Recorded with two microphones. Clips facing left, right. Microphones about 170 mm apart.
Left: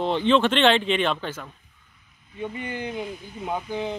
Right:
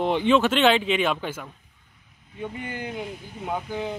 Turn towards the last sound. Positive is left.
turn(degrees=-5)  # may be behind; listen again after turning